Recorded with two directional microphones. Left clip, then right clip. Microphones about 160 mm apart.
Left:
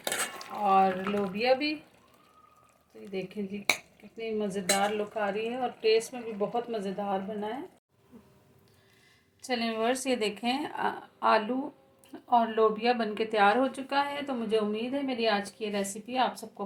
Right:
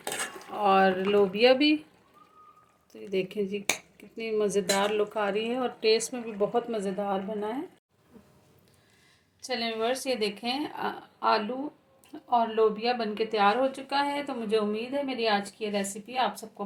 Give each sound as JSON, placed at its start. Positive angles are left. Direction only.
{"t": 0.6, "sound": "speech", "side_deg": -90}
{"t": 3.1, "sound": "speech", "side_deg": -90}
{"t": 4.2, "sound": "a woman's voice", "side_deg": -75}
{"t": 9.5, "sound": "speech", "side_deg": 5}